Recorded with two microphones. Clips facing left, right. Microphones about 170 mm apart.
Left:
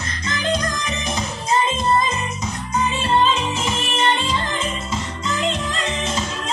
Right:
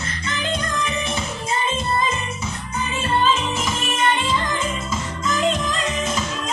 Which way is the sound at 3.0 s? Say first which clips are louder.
Even; 30° left (ahead or behind).